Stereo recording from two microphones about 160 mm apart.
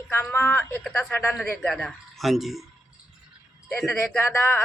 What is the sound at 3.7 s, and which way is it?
Speech, centre (ahead or behind).